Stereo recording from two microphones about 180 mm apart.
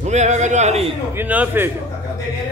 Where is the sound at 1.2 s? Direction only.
10° right (ahead or behind).